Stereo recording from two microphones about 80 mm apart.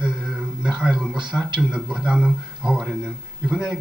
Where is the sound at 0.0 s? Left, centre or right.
Centre.